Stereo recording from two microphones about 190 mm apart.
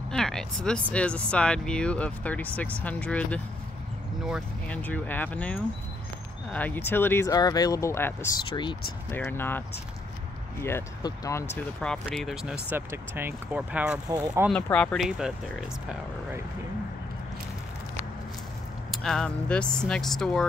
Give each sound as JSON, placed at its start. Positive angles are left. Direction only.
{"t": 0.1, "sound": "speech", "side_deg": 5}
{"t": 4.6, "sound": "speech", "side_deg": 10}
{"t": 10.6, "sound": "speech", "side_deg": 15}
{"t": 11.8, "sound": "speech", "side_deg": 5}
{"t": 12.6, "sound": "speech", "side_deg": -10}
{"t": 14.1, "sound": "speech", "side_deg": -15}
{"t": 14.5, "sound": "speech", "side_deg": 5}
{"t": 18.9, "sound": "speech", "side_deg": 5}